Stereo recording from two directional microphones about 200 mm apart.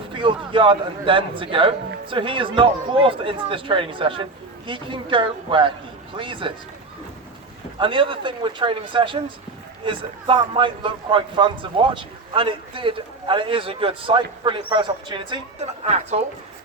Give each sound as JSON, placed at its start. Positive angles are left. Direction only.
{"t": 0.1, "sound": "a man's voice", "side_deg": -25}
{"t": 7.8, "sound": "a man's voice", "side_deg": -25}